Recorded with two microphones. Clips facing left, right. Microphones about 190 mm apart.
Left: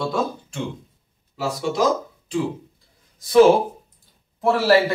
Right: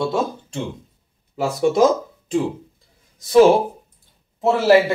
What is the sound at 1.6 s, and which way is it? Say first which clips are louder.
Speech: right 6 dB; 50° right (ahead or behind).